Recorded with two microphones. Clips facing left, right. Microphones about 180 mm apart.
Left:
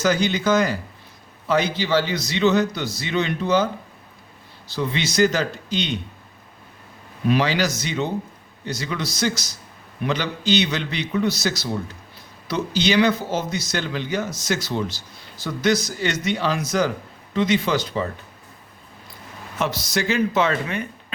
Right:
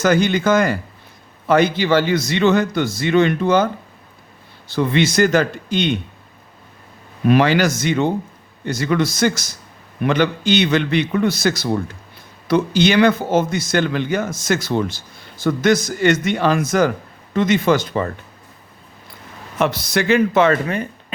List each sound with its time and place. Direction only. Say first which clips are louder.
0.0 s speech: right 4 dB; 55° right (ahead or behind)
4.7 s speech: right 7 dB; 55° right (ahead or behind)
7.3 s speech: right 6 dB; 55° right (ahead or behind)
19.5 s speech: right 5 dB; 60° right (ahead or behind)